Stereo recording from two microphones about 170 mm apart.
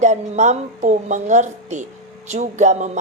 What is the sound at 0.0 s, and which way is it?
Speech, 45° right (ahead or behind).